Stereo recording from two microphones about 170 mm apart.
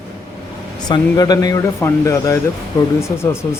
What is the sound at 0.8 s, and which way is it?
Speech, 20° left (ahead or behind).